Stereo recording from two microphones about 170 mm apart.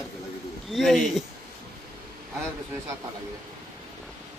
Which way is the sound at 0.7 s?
Centre (ahead or behind).